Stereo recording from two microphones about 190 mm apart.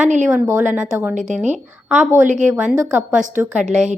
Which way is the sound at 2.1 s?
40° right (ahead or behind).